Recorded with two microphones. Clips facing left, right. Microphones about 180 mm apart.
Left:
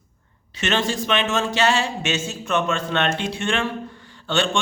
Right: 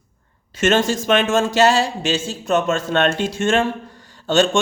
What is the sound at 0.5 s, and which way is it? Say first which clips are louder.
A man's voice: right 6 dB; 45° right (ahead or behind).